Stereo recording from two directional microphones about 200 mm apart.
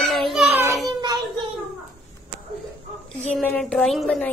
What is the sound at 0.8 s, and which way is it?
Child singing, 20° right (ahead or behind).